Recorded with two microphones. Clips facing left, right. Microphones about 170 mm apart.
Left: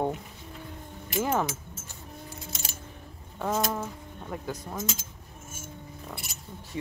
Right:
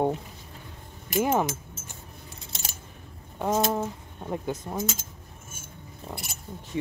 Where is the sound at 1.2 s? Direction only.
20° right (ahead or behind).